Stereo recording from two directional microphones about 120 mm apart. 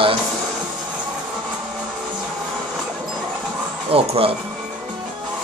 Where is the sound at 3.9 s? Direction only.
50° right (ahead or behind).